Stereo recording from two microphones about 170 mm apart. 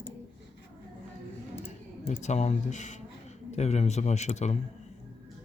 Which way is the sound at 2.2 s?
45° left (ahead or behind).